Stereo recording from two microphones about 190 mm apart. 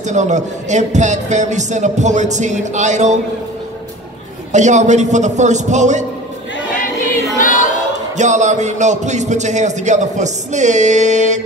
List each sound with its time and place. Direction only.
0.0 s a man's voice: 40° right (ahead or behind)
4.5 s a man's voice: 40° right (ahead or behind)
7.3 s choir: 45° left (ahead or behind)
8.2 s a man's voice: 40° right (ahead or behind)